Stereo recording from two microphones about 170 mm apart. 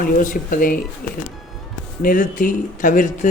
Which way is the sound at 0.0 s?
50° left (ahead or behind).